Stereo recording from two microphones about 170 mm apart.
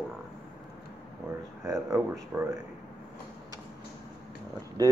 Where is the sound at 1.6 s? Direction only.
15° right (ahead or behind).